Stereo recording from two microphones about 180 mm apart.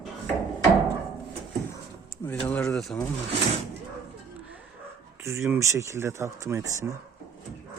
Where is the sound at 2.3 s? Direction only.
10° left (ahead or behind).